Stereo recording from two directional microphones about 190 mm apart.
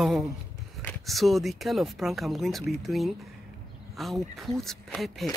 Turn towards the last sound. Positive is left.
turn(degrees=0)  # may be behind; listen again after turning